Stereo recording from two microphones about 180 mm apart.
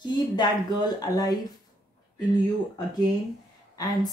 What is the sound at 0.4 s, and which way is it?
Speech, 20° left (ahead or behind).